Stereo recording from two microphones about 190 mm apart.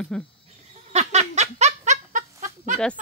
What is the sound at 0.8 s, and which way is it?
Laughter, 35° right (ahead or behind).